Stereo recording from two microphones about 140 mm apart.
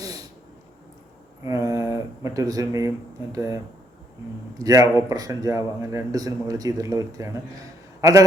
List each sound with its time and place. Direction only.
1.5 s speech: 25° right (ahead or behind)
4.6 s speech: 25° right (ahead or behind)